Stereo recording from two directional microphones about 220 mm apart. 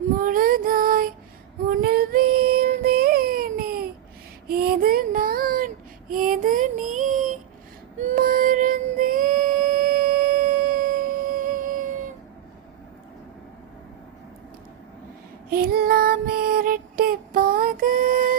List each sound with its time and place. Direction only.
0.2 s child singing: 40° right (ahead or behind)
7.9 s music: 35° right (ahead or behind)
15.4 s female singing: 45° right (ahead or behind)